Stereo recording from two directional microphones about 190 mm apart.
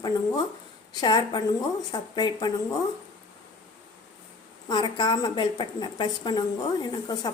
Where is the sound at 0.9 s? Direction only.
20° left (ahead or behind).